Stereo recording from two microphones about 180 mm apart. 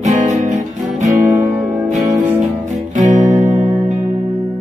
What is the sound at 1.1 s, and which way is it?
Music, 15° right (ahead or behind).